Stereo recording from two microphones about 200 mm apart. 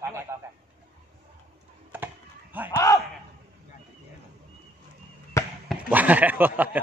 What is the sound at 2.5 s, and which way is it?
Speech, 10° right (ahead or behind).